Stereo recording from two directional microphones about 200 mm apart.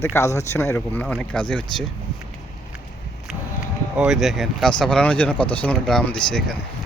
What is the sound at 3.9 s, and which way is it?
A man's voice, 5° right (ahead or behind).